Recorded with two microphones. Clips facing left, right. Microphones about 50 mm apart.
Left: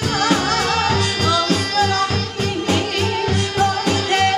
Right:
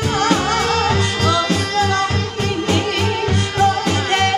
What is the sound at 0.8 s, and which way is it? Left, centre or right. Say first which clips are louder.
Music: right 1 dB; centre.